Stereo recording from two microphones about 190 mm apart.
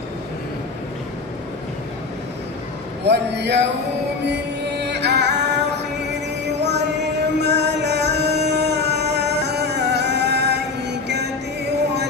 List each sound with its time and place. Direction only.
3.1 s a man's voice: 65° right (ahead or behind)
4.3 s music: 60° right (ahead or behind)